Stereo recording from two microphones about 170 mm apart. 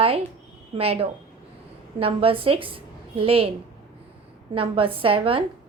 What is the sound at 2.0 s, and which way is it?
A woman's voice, 35° right (ahead or behind).